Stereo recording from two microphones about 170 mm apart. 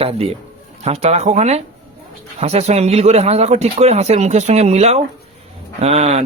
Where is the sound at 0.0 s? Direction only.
35° right (ahead or behind).